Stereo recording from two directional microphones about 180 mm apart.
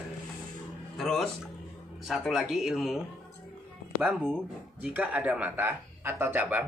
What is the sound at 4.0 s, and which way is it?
Speech, 10° right (ahead or behind).